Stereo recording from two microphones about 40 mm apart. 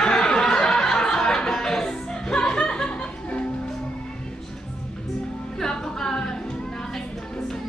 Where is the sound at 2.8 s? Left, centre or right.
Left.